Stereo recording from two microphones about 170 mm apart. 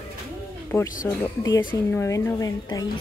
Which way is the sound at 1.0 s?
20° left (ahead or behind).